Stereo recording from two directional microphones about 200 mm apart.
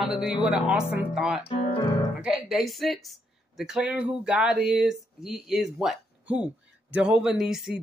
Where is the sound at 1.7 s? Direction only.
20° left (ahead or behind).